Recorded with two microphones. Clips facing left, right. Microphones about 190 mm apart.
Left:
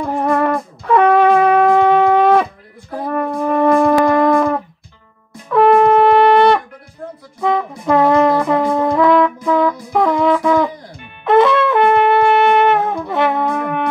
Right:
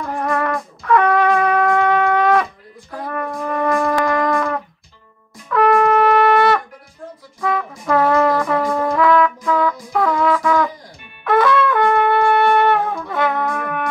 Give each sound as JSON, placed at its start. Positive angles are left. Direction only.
{"t": 0.0, "sound": "wind instrument", "side_deg": 25}
{"t": 2.9, "sound": "shofar", "side_deg": 25}
{"t": 7.3, "sound": "brass instrument", "side_deg": 20}
{"t": 11.2, "sound": "shofar", "side_deg": 25}